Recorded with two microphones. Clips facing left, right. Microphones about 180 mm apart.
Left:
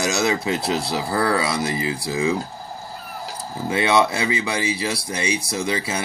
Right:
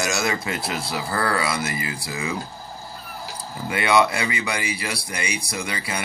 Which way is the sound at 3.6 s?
25° left (ahead or behind).